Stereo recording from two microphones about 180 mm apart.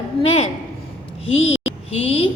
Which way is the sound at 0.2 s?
35° left (ahead or behind).